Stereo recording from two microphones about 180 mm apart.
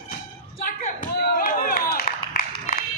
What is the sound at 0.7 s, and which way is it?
Clapping, 50° left (ahead or behind).